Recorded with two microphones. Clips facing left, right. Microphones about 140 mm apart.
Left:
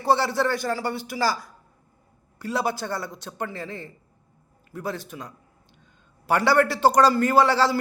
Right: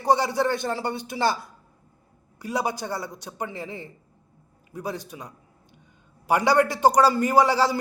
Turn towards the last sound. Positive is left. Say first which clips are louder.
# even
turn(degrees=-15)  # may be behind; listen again after turning